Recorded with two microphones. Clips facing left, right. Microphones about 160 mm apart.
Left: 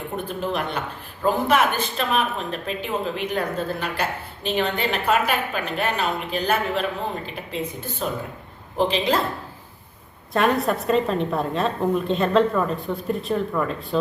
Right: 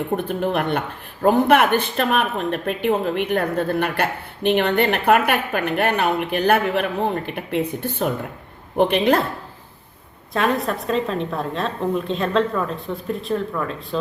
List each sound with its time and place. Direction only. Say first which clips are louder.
0.3 s a woman's voice: right 5 dB; 60° right (ahead or behind)
10.3 s a woman's voice: left 1 dB; centre (ahead or behind)